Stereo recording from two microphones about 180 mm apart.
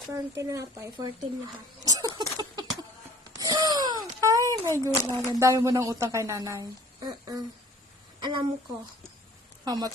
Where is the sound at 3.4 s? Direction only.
20° right (ahead or behind).